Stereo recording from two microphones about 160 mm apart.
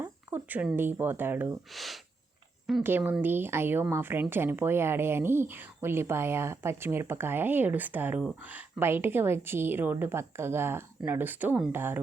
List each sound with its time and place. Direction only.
0.0 s speech: 10° right (ahead or behind)
1.7 s speech: centre (ahead or behind)
2.8 s speech: 15° right (ahead or behind)
8.2 s speech: centre (ahead or behind)